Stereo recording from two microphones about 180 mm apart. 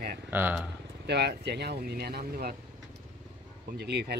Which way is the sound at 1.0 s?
65° right (ahead or behind).